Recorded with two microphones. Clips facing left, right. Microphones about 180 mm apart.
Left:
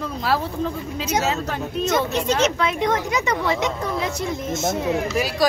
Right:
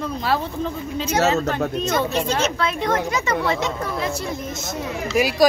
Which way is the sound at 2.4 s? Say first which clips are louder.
Left 2 dB; 20° left (ahead or behind).